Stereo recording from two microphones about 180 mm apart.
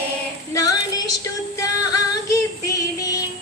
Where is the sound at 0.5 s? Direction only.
20° left (ahead or behind).